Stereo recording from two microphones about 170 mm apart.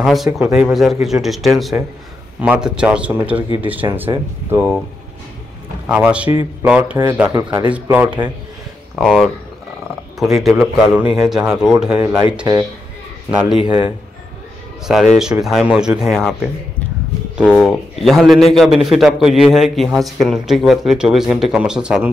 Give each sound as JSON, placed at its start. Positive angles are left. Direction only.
{"t": 0.0, "sound": "a man's voice", "side_deg": -5}
{"t": 4.1, "sound": "speech", "side_deg": -25}
{"t": 4.5, "sound": "speech", "side_deg": -10}
{"t": 5.9, "sound": "speech", "side_deg": -5}
{"t": 7.4, "sound": "speech", "side_deg": -30}
{"t": 7.7, "sound": "a man's voice", "side_deg": -10}
{"t": 13.3, "sound": "a man's voice", "side_deg": -5}
{"t": 13.7, "sound": "speech", "side_deg": -25}
{"t": 14.9, "sound": "a man's voice", "side_deg": 0}
{"t": 17.4, "sound": "a man's voice", "side_deg": -5}